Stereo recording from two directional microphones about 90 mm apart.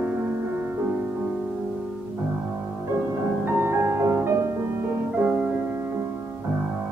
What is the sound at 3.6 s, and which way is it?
Music, 30° right (ahead or behind).